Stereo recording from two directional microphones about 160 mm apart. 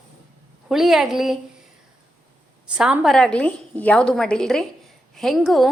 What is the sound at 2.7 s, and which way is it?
A woman's voice, 5° right (ahead or behind).